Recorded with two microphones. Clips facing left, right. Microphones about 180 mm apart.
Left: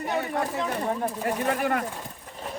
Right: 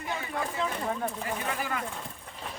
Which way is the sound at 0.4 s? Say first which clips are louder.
Left 4 dB; 35° left (ahead or behind).